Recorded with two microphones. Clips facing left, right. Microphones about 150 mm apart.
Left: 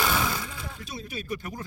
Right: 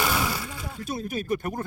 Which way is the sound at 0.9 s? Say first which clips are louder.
Right 8 dB; 50° right (ahead or behind).